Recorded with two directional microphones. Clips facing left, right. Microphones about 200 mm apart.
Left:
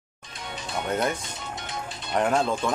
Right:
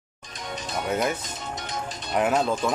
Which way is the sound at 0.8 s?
5° right (ahead or behind).